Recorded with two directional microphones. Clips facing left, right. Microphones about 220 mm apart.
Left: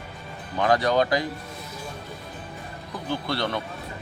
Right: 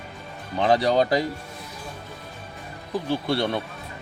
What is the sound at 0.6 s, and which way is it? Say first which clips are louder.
Speech: right 1 dB; 30° right (ahead or behind).